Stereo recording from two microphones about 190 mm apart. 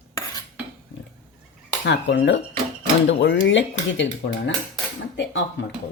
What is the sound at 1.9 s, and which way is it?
Speech, 65° left (ahead or behind).